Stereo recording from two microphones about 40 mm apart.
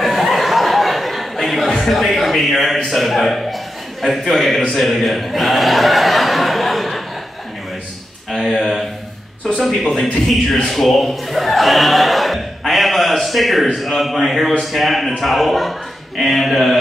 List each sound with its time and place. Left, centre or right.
0.0 s chuckle: centre
1.9 s a sound: centre
2.9 s a man's voice: centre
8.3 s a sound: centre
9.7 s speech: centre
10.7 s a man's voice: centre